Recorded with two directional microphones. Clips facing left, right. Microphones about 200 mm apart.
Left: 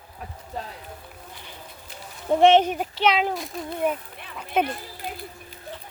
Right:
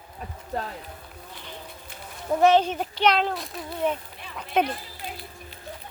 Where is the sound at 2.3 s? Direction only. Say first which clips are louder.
Left 3 dB; 25° left (ahead or behind).